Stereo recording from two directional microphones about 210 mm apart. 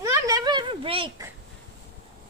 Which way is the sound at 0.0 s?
15° right (ahead or behind).